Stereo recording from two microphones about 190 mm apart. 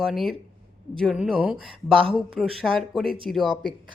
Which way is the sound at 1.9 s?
25° right (ahead or behind).